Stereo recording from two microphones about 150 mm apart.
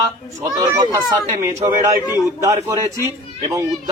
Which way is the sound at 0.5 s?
25° right (ahead or behind).